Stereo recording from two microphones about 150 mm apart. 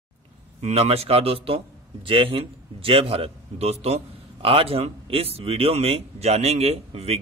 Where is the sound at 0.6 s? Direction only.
45° right (ahead or behind).